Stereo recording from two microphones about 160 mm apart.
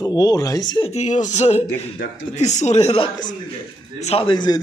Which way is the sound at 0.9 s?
45° left (ahead or behind).